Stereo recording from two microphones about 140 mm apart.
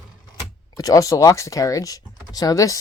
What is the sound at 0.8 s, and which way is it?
Speech, 25° left (ahead or behind).